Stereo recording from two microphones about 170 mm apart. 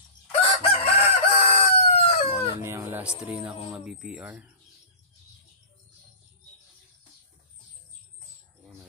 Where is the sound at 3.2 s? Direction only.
5° right (ahead or behind).